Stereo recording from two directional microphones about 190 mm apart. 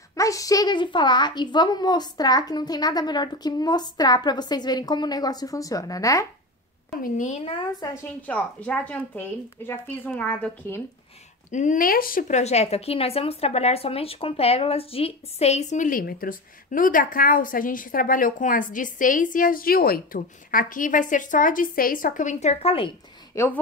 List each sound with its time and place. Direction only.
0.1 s a woman's voice: 15° left (ahead or behind)
7.0 s a woman's voice: 40° left (ahead or behind)
7.8 s a woman's voice: 10° left (ahead or behind)
11.5 s a woman's voice: 40° left (ahead or behind)
23.3 s a woman's voice: 15° left (ahead or behind)